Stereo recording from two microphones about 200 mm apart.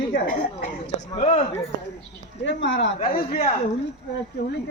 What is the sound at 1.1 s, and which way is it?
Speech, 30° left (ahead or behind).